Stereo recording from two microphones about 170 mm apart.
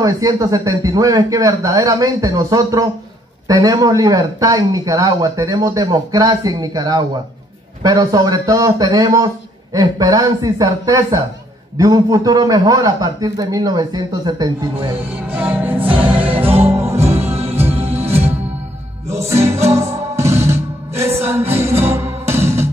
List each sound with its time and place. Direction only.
0.0 s speech: 20° right (ahead or behind)
15.2 s music: 10° right (ahead or behind)
16.3 s music: 35° right (ahead or behind)
17.0 s music: 15° right (ahead or behind)
17.3 s music: 35° right (ahead or behind)
19.0 s music: 15° right (ahead or behind)